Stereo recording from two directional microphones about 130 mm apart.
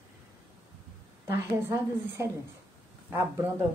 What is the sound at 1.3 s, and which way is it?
Speech, 20° right (ahead or behind).